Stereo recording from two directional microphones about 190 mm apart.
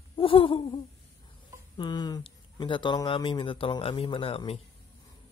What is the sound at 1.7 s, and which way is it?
Speech, 20° left (ahead or behind).